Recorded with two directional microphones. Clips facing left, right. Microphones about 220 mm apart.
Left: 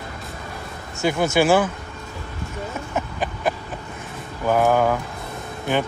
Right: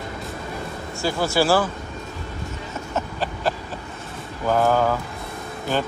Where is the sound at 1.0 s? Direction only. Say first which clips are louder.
Left 2 dB; 20° left (ahead or behind).